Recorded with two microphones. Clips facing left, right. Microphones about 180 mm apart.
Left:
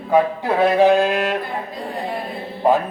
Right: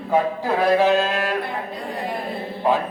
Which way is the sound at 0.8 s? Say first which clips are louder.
Left 4 dB; 15° left (ahead or behind).